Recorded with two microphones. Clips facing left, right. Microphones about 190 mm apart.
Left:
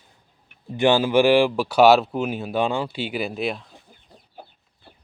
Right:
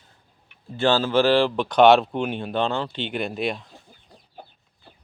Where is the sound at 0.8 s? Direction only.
15° left (ahead or behind).